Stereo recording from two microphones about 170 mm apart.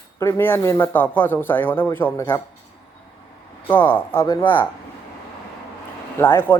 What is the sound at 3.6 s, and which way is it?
Speech, 10° left (ahead or behind).